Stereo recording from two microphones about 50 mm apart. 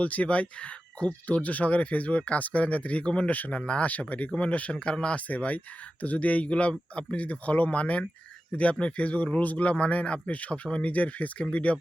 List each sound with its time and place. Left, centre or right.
0.0 s speech: left
5.3 s speech: left